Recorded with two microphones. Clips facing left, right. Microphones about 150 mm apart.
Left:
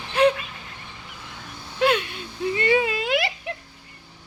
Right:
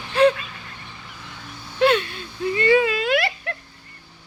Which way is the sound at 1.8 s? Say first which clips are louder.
Right 3 dB; 10° left (ahead or behind).